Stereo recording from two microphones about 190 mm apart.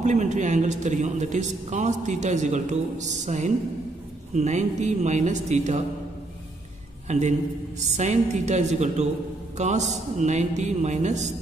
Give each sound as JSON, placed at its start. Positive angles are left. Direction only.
{"t": 0.0, "sound": "speech", "side_deg": -40}
{"t": 7.1, "sound": "speech", "side_deg": -40}